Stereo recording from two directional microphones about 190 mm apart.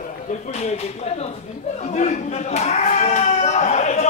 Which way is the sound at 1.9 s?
35° left (ahead or behind).